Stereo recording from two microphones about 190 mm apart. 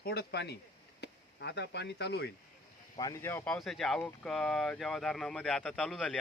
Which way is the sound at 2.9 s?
20° left (ahead or behind).